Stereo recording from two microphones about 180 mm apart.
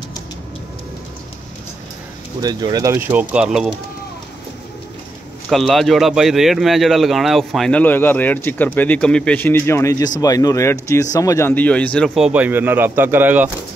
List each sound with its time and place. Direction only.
2.4 s speech: 20° right (ahead or behind); by 3.7 s 5° right (ahead or behind)
5.5 s speech: centre (ahead or behind)
12.3 s speech: 10° right (ahead or behind)